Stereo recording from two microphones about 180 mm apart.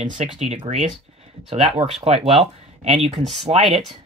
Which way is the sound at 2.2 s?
35° right (ahead or behind).